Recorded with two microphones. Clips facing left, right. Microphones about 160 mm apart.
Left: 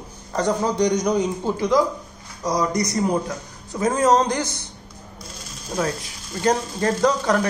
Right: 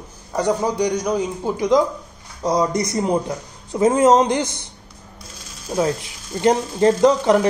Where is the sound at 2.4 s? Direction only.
25° right (ahead or behind).